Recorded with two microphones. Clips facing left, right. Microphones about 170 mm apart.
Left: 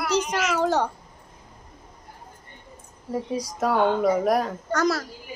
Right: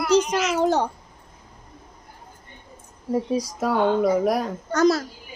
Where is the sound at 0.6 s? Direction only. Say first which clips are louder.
Right 2 dB; 15° right (ahead or behind).